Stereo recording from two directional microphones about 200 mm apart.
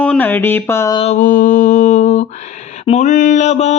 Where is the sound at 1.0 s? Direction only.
35° left (ahead or behind).